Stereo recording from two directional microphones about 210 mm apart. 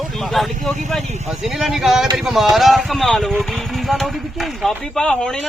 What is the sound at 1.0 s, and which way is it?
Speech, 30° right (ahead or behind).